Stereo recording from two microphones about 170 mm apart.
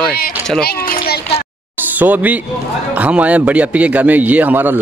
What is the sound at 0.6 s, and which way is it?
Speech, 65° left (ahead or behind).